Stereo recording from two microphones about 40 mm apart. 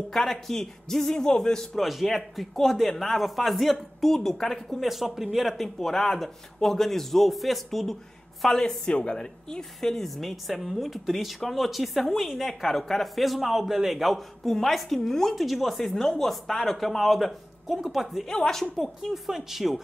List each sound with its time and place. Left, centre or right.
0.1 s a man's voice: centre
1.8 s speech: centre
5.8 s a man's voice: centre
9.8 s speech: centre
17.6 s speech: centre
18.5 s a man's voice: centre
19.0 s speech: centre